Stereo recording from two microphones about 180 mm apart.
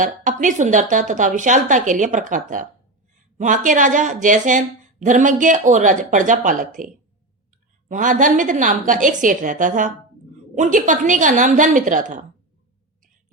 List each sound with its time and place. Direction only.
0.0 s a woman's voice: 45° right (ahead or behind)